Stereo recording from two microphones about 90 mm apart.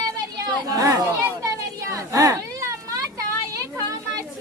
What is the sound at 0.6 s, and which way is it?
Chatter, 40° right (ahead or behind).